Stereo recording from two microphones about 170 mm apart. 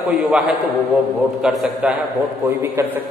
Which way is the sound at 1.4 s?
5° right (ahead or behind).